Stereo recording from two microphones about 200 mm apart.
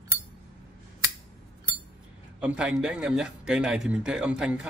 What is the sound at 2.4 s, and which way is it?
Speech, 5° right (ahead or behind).